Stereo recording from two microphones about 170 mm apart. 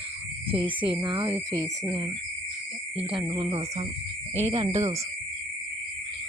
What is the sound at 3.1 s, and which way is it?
Speech, 30° right (ahead or behind).